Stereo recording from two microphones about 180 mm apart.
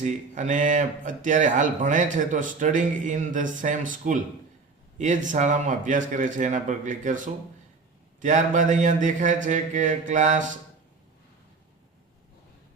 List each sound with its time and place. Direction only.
0.0 s speech: 45° right (ahead or behind)